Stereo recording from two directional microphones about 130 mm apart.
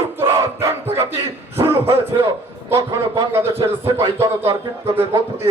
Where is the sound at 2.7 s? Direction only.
25° right (ahead or behind).